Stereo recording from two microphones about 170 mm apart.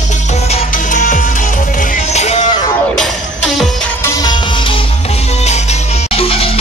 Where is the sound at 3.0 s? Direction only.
5° left (ahead or behind).